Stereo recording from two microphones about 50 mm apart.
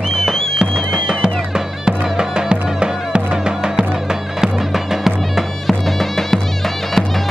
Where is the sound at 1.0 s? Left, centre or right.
Centre.